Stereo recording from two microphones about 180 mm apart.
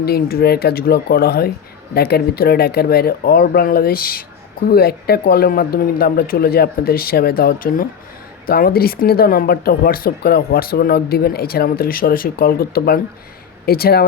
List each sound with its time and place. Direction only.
0.0 s speech: 60° left (ahead or behind)